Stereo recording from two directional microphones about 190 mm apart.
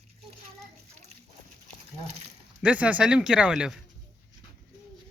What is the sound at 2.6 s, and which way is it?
Speech, 5° right (ahead or behind).